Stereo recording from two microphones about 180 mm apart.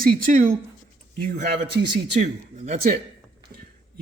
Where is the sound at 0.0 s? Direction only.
50° right (ahead or behind).